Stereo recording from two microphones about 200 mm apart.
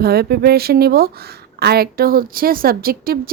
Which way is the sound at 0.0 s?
50° right (ahead or behind).